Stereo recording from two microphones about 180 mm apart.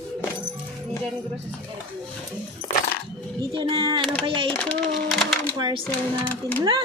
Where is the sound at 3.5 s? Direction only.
25° right (ahead or behind).